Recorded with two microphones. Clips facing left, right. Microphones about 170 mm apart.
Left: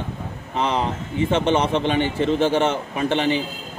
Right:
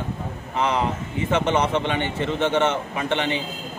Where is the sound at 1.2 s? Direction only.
30° left (ahead or behind).